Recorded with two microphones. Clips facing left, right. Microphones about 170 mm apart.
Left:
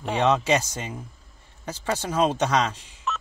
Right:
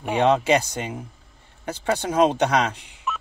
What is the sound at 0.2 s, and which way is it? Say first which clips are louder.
Speech: right 3 dB; 55° right (ahead or behind).